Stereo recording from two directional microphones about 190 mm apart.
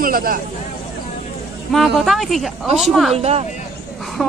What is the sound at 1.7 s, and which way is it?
Speech, centre (ahead or behind).